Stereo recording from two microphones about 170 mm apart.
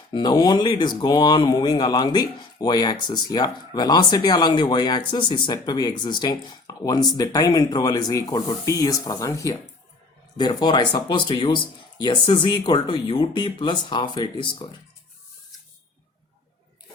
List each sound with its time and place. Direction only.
0.1 s speech: 25° left (ahead or behind)